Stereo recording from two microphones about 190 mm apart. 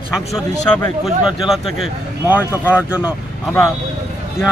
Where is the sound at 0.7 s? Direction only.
5° left (ahead or behind).